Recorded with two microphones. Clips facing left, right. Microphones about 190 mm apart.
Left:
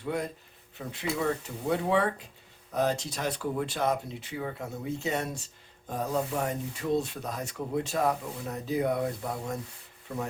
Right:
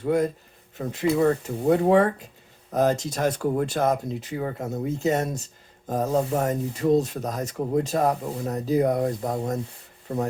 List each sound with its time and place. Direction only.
0.0 s speech: 45° right (ahead or behind)